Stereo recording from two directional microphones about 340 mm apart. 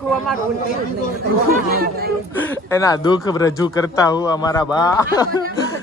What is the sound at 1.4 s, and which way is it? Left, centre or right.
Speech, right.